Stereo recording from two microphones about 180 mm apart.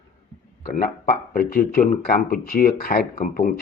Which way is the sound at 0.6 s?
50° left (ahead or behind).